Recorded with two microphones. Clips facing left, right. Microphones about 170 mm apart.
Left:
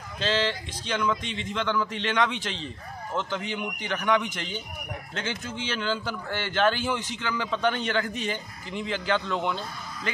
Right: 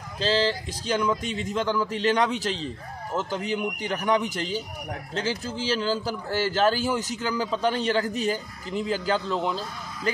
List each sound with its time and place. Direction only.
0.2 s a man's voice: 35° right (ahead or behind)